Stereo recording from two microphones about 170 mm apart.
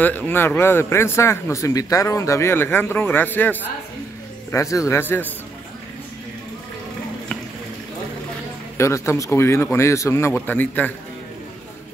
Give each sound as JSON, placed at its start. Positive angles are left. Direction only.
{"t": 0.0, "sound": "speech", "side_deg": 10}
{"t": 8.7, "sound": "speech", "side_deg": 15}